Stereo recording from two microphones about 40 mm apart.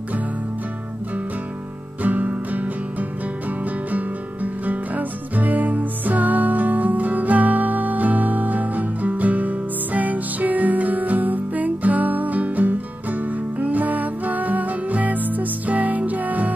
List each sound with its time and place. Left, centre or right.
2.0 s music: right